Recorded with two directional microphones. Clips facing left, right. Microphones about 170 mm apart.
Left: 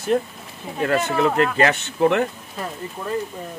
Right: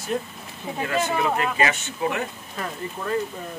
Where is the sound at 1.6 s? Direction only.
60° left (ahead or behind).